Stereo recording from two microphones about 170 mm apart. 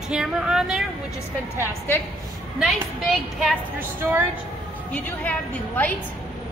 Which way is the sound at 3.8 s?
10° right (ahead or behind).